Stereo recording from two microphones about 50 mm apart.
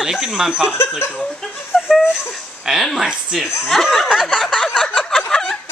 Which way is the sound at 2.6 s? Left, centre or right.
Centre.